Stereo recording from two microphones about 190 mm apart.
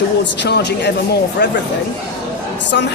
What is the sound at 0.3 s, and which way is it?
A woman's voice, 60° left (ahead or behind).